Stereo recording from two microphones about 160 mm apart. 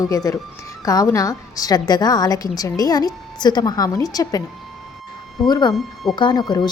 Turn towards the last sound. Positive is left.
turn(degrees=25)  # may be behind; listen again after turning